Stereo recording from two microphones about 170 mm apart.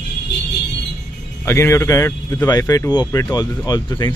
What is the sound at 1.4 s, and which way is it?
Speech, 15° left (ahead or behind).